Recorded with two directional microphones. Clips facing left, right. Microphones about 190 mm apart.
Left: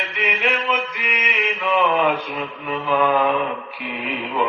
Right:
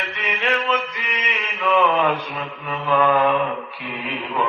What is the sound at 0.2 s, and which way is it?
Music, 10° left (ahead or behind).